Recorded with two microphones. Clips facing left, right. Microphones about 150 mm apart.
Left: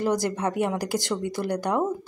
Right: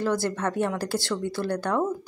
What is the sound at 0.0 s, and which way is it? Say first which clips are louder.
Speech: left 1 dB; 15° left (ahead or behind).